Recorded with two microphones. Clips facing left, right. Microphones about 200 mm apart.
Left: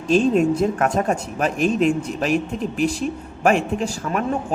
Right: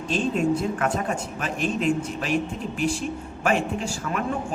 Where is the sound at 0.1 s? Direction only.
45° left (ahead or behind).